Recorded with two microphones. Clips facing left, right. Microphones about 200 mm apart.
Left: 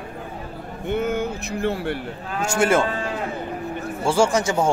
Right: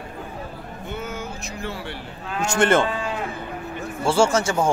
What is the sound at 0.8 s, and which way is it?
Speech, 60° left (ahead or behind).